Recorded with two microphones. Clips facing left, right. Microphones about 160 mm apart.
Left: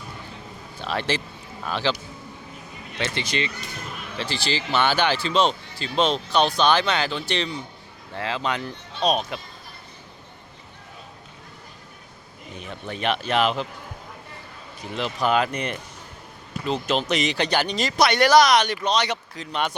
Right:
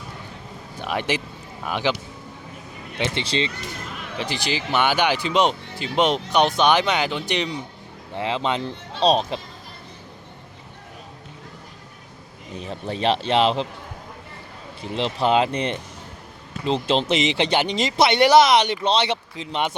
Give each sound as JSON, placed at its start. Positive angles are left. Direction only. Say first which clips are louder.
{"t": 0.8, "sound": "speech", "louder": "right 1 dB", "side_deg": -15}
{"t": 3.0, "sound": "speech", "louder": "right 3 dB", "side_deg": -25}
{"t": 12.5, "sound": "speech", "louder": "right 5 dB", "side_deg": -35}
{"t": 14.8, "sound": "speech", "louder": "right 3 dB", "side_deg": -25}